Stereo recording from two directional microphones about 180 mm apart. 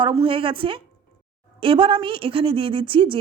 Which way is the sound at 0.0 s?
25° right (ahead or behind).